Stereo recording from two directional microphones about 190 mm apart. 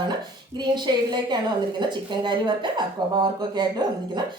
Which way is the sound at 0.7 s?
25° right (ahead or behind).